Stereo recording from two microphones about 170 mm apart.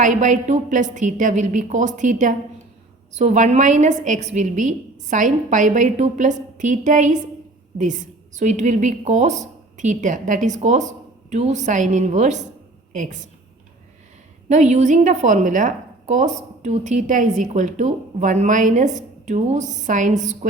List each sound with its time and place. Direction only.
0.0 s a woman's voice: 45° right (ahead or behind)
14.5 s a woman's voice: 45° right (ahead or behind)